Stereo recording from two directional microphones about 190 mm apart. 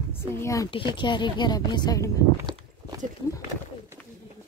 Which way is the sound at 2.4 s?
25° right (ahead or behind).